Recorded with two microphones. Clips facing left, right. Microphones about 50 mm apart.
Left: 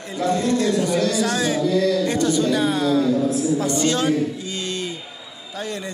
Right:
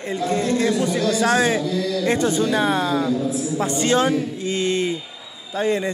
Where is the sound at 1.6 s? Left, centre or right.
Left.